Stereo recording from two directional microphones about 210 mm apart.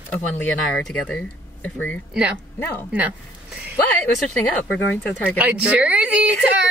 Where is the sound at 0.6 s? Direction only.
5° left (ahead or behind).